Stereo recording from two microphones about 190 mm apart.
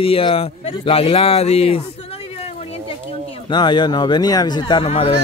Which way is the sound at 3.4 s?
25° left (ahead or behind).